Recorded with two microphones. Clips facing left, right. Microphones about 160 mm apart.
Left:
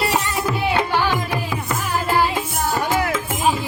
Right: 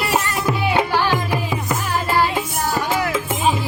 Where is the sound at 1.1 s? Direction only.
20° right (ahead or behind).